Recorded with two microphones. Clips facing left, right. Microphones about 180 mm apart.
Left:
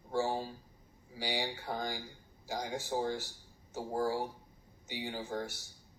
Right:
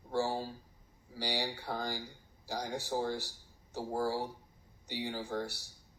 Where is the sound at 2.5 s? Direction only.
Centre (ahead or behind).